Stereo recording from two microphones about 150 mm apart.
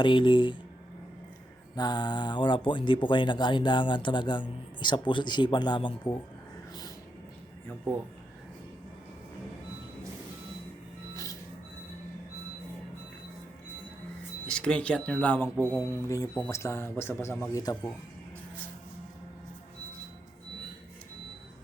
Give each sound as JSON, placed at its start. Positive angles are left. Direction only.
{"t": 0.0, "sound": "speech", "side_deg": 30}
{"t": 1.7, "sound": "speech", "side_deg": 30}
{"t": 14.4, "sound": "speech", "side_deg": 5}